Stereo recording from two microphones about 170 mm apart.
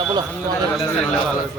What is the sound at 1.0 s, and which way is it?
Speech, 5° left (ahead or behind).